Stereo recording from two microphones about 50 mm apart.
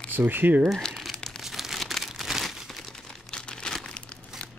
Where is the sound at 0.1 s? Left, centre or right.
Right.